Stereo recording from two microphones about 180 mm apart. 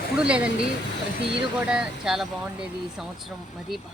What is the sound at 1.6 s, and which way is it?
Speech, 5° right (ahead or behind).